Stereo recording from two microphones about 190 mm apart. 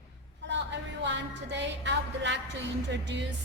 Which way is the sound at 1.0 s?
65° right (ahead or behind).